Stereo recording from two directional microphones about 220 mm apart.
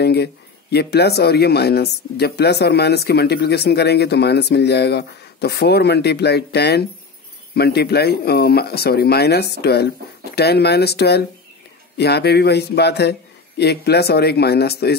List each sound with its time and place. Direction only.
0.0 s speech: 50° left (ahead or behind)